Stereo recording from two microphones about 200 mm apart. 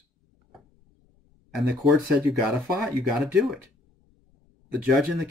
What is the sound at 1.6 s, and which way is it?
Speech, 5° right (ahead or behind).